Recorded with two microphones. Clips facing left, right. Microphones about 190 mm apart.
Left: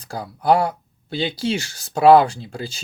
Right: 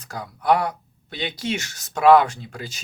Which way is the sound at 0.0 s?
30° left (ahead or behind).